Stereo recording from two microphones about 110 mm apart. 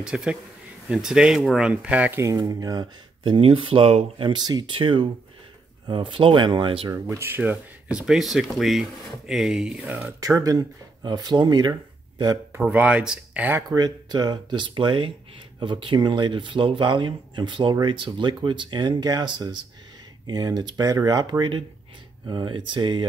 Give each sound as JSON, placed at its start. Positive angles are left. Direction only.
{"t": 0.0, "sound": "speech", "side_deg": -5}
{"t": 2.3, "sound": "speech", "side_deg": -35}
{"t": 3.3, "sound": "speech", "side_deg": -55}
{"t": 4.2, "sound": "speech", "side_deg": -40}
{"t": 4.7, "sound": "speech", "side_deg": -50}
{"t": 6.9, "sound": "speech", "side_deg": -25}
{"t": 7.9, "sound": "speech", "side_deg": -5}
{"t": 9.9, "sound": "speech", "side_deg": -25}
{"t": 12.5, "sound": "speech", "side_deg": -15}
{"t": 13.7, "sound": "speech", "side_deg": -40}